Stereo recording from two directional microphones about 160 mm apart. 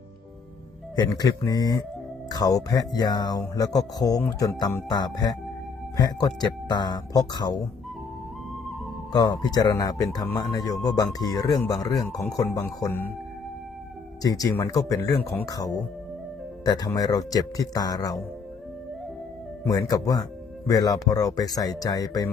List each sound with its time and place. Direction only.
0.9 s speech: 25° left (ahead or behind)
9.1 s speech: 25° left (ahead or behind)
14.2 s speech: 25° left (ahead or behind)
19.6 s speech: 20° left (ahead or behind)